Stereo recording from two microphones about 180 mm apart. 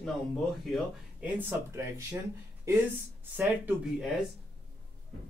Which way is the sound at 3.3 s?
10° right (ahead or behind).